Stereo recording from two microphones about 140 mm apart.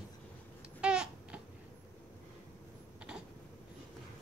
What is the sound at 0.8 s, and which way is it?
Babbling, 5° right (ahead or behind).